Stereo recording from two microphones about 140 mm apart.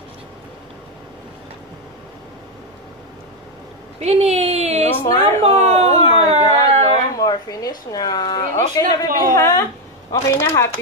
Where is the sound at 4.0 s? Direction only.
50° right (ahead or behind).